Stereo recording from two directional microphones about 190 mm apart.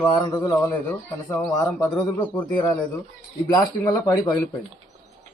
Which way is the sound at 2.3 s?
25° left (ahead or behind).